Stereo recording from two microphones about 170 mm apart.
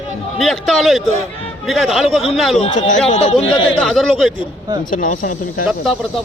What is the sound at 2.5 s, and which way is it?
Speech, 30° left (ahead or behind).